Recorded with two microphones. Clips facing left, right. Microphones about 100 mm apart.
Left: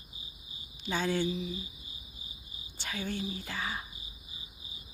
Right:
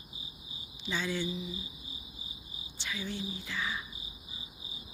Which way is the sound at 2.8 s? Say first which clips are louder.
Left 2 dB; 50° left (ahead or behind).